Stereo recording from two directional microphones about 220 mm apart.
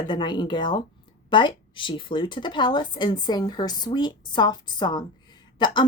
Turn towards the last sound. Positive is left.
turn(degrees=20)  # may be behind; listen again after turning